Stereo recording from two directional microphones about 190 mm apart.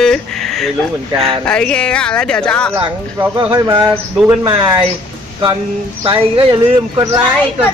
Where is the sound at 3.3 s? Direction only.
20° right (ahead or behind).